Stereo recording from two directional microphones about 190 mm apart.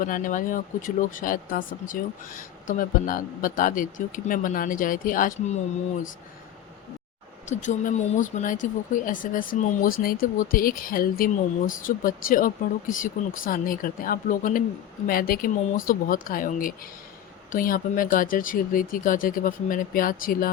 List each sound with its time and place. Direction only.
0.0 s a woman's voice: 45° left (ahead or behind)
7.4 s a woman's voice: 40° left (ahead or behind)